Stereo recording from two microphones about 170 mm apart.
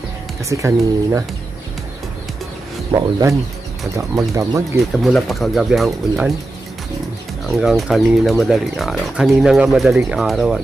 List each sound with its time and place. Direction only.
0.5 s speech: 20° right (ahead or behind)
2.9 s speech: 20° right (ahead or behind)
4.7 s speech: centre (ahead or behind)
7.4 s speech: centre (ahead or behind)